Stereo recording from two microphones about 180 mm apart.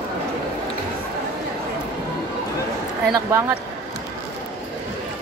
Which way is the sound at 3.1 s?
15° right (ahead or behind).